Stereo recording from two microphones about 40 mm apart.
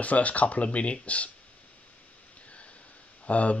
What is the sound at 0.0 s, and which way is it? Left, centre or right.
Speech, left.